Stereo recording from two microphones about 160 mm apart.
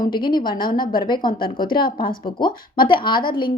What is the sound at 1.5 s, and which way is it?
Speech, 65° left (ahead or behind).